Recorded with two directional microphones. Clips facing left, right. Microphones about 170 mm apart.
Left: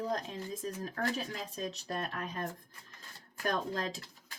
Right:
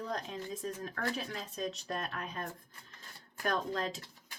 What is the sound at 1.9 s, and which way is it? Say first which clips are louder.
Speech: left 2 dB; 35° left (ahead or behind).